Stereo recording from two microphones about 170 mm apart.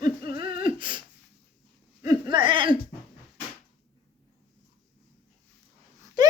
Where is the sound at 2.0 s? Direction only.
25° right (ahead or behind).